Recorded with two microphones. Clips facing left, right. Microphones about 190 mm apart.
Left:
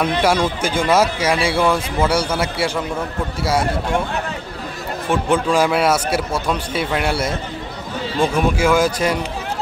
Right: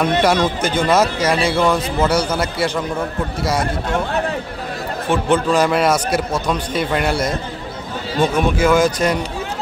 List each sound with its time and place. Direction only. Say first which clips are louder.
0.0 s speech: right 2 dB; 10° left (ahead or behind)
5.1 s speech: right 1 dB; 10° left (ahead or behind)